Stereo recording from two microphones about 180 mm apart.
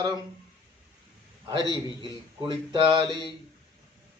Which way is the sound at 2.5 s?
25° right (ahead or behind).